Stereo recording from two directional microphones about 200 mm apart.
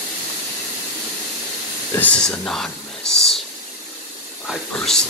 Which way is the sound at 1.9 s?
5° left (ahead or behind).